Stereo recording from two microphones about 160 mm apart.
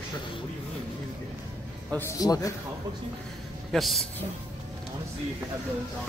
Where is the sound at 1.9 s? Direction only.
10° left (ahead or behind).